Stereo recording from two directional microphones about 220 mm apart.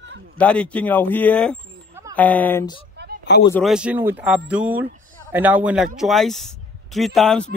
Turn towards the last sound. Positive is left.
turn(degrees=0)  # may be behind; listen again after turning